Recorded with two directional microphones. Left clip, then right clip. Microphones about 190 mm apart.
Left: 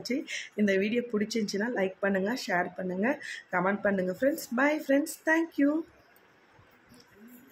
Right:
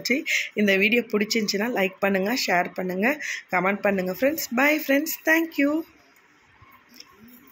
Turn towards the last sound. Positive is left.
turn(degrees=-15)  # may be behind; listen again after turning